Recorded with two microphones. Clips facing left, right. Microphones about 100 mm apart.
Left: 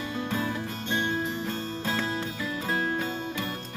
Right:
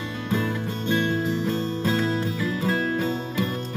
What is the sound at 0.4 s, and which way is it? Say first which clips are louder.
Music: right 4 dB; 25° left (ahead or behind).